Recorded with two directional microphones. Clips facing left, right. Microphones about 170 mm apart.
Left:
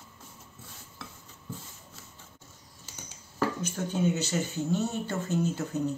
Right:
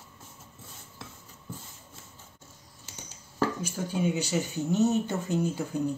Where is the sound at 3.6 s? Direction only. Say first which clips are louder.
Left 1 dB; 10° right (ahead or behind).